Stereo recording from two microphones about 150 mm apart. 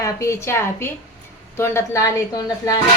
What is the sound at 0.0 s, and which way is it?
A woman's voice, 20° left (ahead or behind).